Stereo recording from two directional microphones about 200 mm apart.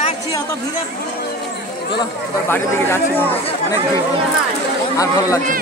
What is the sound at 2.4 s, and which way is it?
Speech, 10° left (ahead or behind).